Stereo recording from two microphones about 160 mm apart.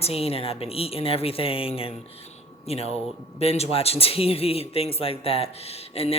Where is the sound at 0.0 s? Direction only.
40° left (ahead or behind).